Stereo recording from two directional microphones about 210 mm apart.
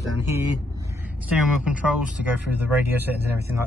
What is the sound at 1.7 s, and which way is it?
Speech, 5° right (ahead or behind).